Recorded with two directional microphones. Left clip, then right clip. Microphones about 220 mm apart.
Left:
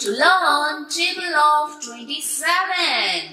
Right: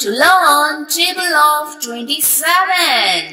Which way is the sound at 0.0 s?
40° right (ahead or behind).